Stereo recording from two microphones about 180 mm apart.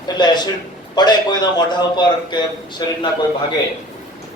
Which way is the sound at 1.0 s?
25° left (ahead or behind).